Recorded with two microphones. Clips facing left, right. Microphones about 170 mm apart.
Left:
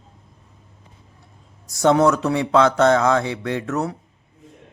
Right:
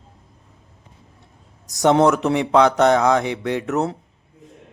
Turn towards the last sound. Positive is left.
turn(degrees=-20)  # may be behind; listen again after turning